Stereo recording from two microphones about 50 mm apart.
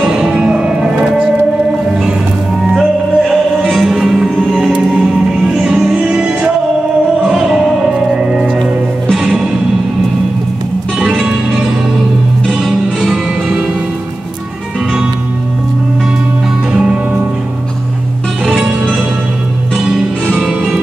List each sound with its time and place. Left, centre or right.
0.0 s music: centre
2.7 s music: centre
11.0 s music: centre
20.3 s music: centre